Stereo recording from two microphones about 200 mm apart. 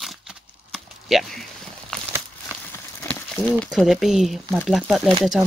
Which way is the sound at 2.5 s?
10° right (ahead or behind).